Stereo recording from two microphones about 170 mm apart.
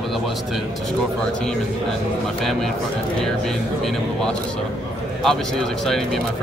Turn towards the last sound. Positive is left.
turn(degrees=0)  # may be behind; listen again after turning